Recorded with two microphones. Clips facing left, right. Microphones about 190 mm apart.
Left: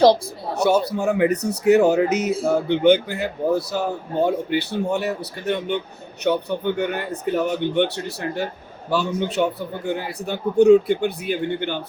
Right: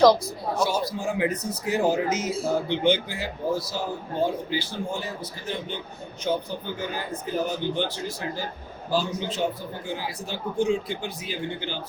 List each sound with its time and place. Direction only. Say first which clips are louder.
0.5 s a man's voice: left 7 dB; 65° left (ahead or behind)